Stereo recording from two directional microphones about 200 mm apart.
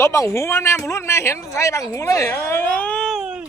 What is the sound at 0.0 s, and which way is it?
Speech, 15° left (ahead or behind).